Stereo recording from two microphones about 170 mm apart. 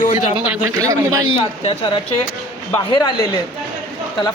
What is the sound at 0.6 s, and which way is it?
Speech, 20° right (ahead or behind).